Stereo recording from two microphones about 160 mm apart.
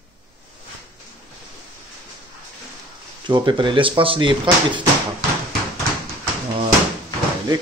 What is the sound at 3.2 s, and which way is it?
Speech, 30° right (ahead or behind).